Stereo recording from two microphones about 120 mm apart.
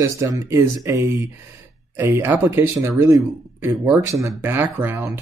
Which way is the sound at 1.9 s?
20° right (ahead or behind).